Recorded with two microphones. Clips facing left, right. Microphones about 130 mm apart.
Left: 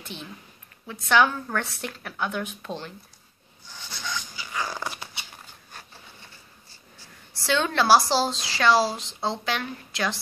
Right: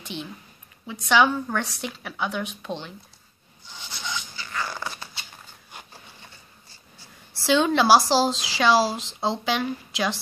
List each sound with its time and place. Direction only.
1.0 s speech: 5° right (ahead or behind)
3.6 s a sound: 20° right (ahead or behind)
4.4 s dog: 10° left (ahead or behind)
7.4 s a woman's voice: 10° right (ahead or behind)
8.1 s speech: 5° right (ahead or behind)